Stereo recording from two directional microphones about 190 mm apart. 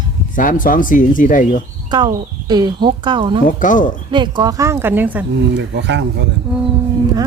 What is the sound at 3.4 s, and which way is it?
Speech, 45° left (ahead or behind).